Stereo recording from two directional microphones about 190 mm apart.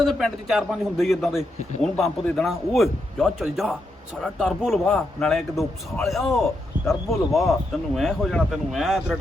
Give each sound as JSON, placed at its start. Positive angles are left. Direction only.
{"t": 0.0, "sound": "a man's voice", "side_deg": 0}
{"t": 6.7, "sound": "a sound", "side_deg": -45}
{"t": 7.3, "sound": "a man's voice", "side_deg": 0}